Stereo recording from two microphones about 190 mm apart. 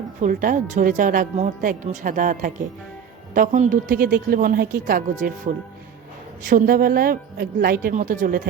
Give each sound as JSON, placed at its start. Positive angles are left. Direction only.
{"t": 0.2, "sound": "a woman's voice", "side_deg": -45}